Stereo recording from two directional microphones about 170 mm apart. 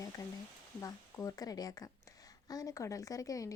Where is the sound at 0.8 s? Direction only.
20° left (ahead or behind).